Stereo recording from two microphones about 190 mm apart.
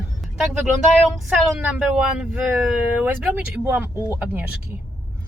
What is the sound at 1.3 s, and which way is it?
Speech, 5° right (ahead or behind).